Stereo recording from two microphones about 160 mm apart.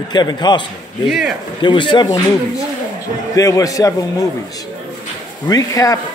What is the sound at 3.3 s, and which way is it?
Speech, 20° left (ahead or behind).